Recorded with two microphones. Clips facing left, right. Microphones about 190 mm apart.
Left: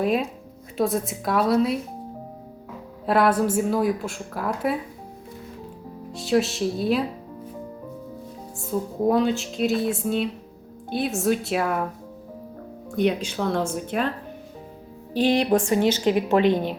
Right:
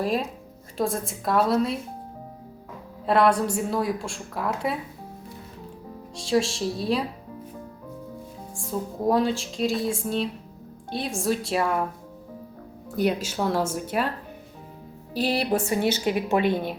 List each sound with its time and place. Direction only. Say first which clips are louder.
0.0 s a woman's voice: left 3 dB; centre (ahead or behind)
3.1 s a woman's voice: left 1 dB; 5° left (ahead or behind)
6.1 s a woman's voice: left 2 dB; 5° left (ahead or behind)
8.7 s a woman's voice: left 2 dB; centre (ahead or behind)
13.0 s a woman's voice: left 1 dB; 5° right (ahead or behind)
15.1 s a woman's voice: left 5 dB; 40° right (ahead or behind)
15.4 s a woman's voice: left 4 dB; 5° right (ahead or behind)